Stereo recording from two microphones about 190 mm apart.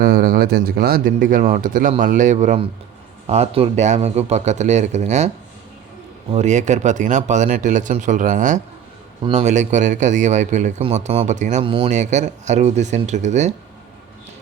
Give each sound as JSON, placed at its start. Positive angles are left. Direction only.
{"t": 0.0, "sound": "a man's voice", "side_deg": -50}
{"t": 6.3, "sound": "a man's voice", "side_deg": -40}